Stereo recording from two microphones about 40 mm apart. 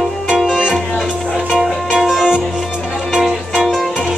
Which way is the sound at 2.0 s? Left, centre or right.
Centre.